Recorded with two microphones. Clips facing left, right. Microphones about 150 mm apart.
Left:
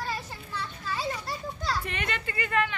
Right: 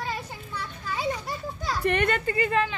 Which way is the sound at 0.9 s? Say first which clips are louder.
Right 3 dB; 15° right (ahead or behind).